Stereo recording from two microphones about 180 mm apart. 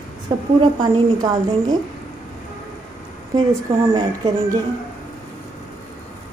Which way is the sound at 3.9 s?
20° right (ahead or behind).